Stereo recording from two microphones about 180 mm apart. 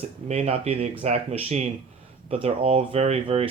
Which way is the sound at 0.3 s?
35° right (ahead or behind).